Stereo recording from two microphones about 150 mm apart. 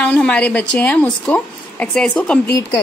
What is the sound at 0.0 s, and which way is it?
A woman's voice, 10° left (ahead or behind).